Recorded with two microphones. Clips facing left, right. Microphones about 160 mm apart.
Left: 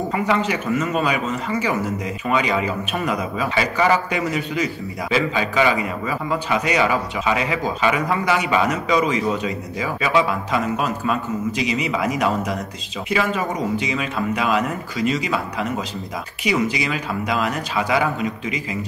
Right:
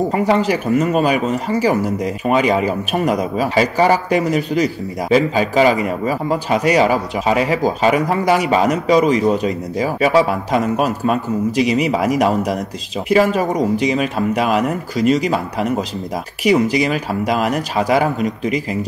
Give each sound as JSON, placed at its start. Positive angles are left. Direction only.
{"t": 0.1, "sound": "a man's voice", "side_deg": -35}
{"t": 16.4, "sound": "a man's voice", "side_deg": -40}